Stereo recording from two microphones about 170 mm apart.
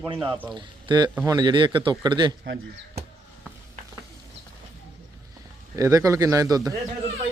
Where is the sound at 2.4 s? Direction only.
75° right (ahead or behind).